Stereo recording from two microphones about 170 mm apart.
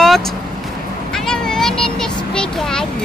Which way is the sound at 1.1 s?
5° left (ahead or behind).